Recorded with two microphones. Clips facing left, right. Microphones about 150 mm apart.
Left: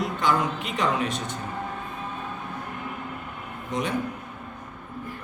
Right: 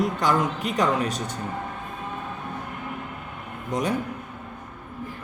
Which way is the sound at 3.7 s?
40° right (ahead or behind).